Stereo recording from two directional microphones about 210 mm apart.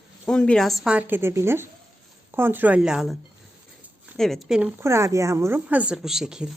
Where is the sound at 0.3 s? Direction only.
5° left (ahead or behind).